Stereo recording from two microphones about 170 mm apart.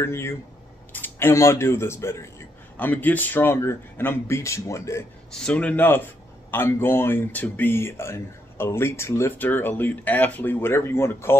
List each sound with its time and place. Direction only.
0.0 s speech: 15° left (ahead or behind)
5.3 s speech: 5° left (ahead or behind)